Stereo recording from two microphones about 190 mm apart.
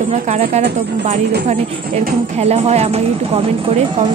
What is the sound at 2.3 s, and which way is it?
Speech, 35° right (ahead or behind).